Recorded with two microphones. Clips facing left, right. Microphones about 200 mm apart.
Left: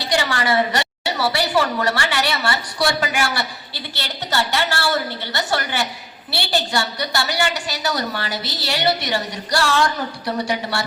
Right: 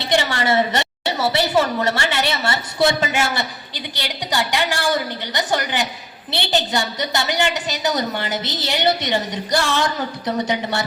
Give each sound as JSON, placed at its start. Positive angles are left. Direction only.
{"t": 0.0, "sound": "a woman's voice", "side_deg": -25}